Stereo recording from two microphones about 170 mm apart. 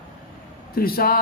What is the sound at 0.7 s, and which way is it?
Speech, 60° left (ahead or behind).